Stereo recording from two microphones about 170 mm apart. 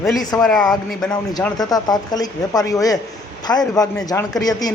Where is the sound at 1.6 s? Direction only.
20° left (ahead or behind).